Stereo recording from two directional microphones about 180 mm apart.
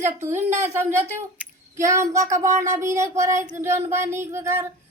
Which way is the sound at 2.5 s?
40° right (ahead or behind).